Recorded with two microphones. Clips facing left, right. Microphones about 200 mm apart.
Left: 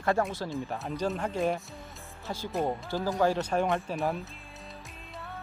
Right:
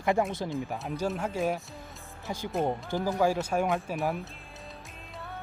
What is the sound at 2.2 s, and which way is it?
Speech, 15° right (ahead or behind).